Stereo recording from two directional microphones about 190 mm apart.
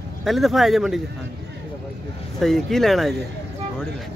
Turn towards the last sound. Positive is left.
turn(degrees=0)  # may be behind; listen again after turning